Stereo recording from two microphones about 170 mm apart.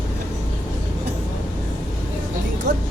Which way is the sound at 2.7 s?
90° right.